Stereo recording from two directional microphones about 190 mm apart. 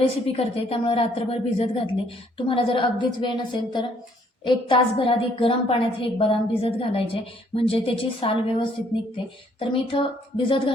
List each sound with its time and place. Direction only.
0.3 s a woman's voice: 30° left (ahead or behind)